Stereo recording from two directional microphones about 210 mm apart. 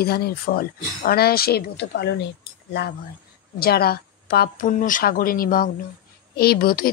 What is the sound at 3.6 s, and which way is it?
Speech, 45° left (ahead or behind).